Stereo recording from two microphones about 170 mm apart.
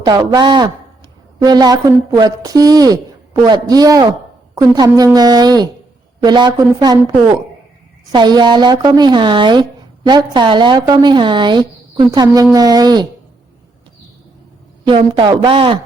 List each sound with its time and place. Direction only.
0.0 s a woman's voice: 20° right (ahead or behind)
14.8 s a woman's voice: 25° right (ahead or behind)